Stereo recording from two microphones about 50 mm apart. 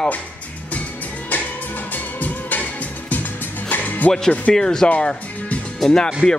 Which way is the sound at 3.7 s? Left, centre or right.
Left.